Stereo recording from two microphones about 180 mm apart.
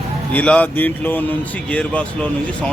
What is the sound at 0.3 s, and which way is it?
Speech, 10° left (ahead or behind).